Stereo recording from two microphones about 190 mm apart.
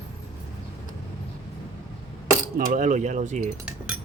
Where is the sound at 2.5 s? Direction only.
40° right (ahead or behind).